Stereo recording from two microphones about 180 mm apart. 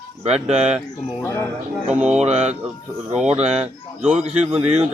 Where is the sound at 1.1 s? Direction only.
15° left (ahead or behind).